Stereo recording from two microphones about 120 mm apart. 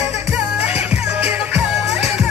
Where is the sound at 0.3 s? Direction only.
10° right (ahead or behind).